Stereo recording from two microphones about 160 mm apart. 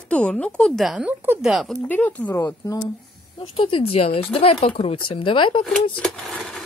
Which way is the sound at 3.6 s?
35° left (ahead or behind).